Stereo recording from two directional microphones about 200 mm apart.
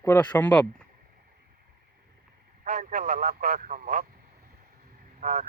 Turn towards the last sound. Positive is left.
turn(degrees=-40)  # may be behind; listen again after turning